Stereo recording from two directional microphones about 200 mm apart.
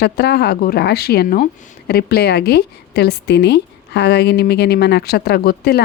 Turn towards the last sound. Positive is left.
turn(degrees=50)  # may be behind; listen again after turning